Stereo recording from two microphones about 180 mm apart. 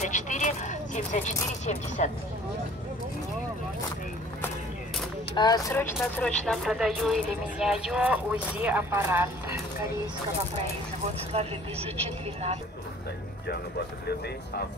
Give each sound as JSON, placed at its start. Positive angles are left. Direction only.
{"t": 0.0, "sound": "speech", "side_deg": 40}
{"t": 5.3, "sound": "speech", "side_deg": 20}
{"t": 11.3, "sound": "speech", "side_deg": -35}